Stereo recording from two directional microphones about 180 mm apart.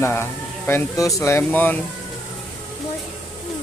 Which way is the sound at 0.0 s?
15° left (ahead or behind).